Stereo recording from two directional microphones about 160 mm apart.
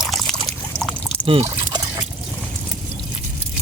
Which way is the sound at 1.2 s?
35° right (ahead or behind).